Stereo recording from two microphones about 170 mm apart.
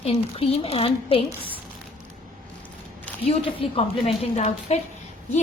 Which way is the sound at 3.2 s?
35° left (ahead or behind).